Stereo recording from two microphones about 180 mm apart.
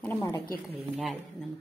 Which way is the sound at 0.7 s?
Centre (ahead or behind).